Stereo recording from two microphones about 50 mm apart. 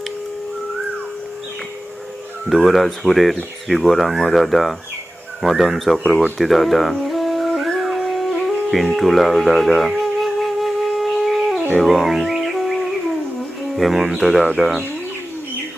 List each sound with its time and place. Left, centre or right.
2.6 s speech: centre
6.4 s howl: centre
11.8 s music: centre
13.7 s speech: centre